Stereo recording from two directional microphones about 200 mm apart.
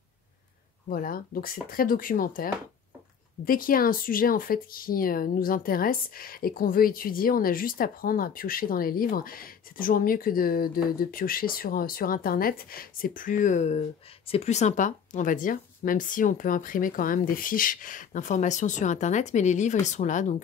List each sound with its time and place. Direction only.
0.8 s speech: 45° left (ahead or behind)